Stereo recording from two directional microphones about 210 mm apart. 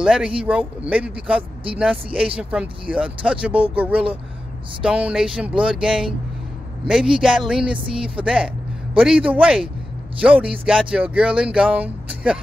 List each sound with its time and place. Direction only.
0.0 s a man's voice: 5° right (ahead or behind)